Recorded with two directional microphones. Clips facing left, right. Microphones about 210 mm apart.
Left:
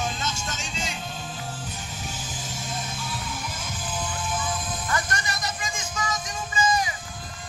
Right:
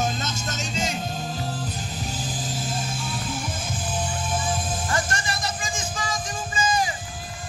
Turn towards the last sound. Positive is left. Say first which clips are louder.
# even
turn(degrees=-30)  # may be behind; listen again after turning